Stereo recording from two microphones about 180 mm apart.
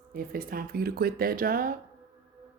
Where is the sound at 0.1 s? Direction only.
55° right (ahead or behind).